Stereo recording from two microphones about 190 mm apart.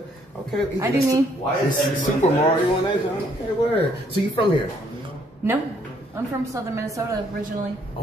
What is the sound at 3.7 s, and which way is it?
Speech, 25° left (ahead or behind).